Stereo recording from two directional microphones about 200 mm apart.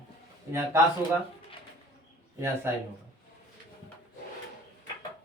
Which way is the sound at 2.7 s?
10° right (ahead or behind).